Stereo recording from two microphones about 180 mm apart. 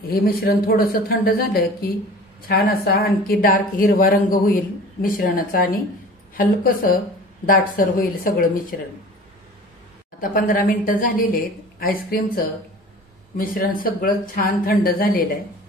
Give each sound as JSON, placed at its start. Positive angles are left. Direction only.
{"t": 0.1, "sound": "a woman's voice", "side_deg": 55}
{"t": 10.3, "sound": "a woman's voice", "side_deg": 50}